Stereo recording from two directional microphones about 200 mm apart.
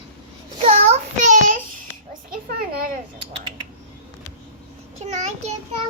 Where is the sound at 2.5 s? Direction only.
45° right (ahead or behind).